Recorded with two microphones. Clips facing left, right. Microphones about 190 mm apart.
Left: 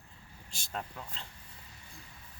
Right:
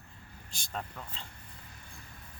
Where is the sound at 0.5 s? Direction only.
5° left (ahead or behind).